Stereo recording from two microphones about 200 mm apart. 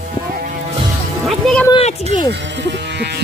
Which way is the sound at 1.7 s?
25° left (ahead or behind).